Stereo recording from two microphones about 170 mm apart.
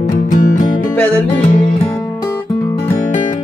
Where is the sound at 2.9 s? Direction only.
45° left (ahead or behind).